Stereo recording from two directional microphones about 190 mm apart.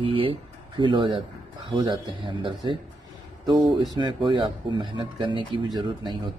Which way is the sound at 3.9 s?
25° right (ahead or behind).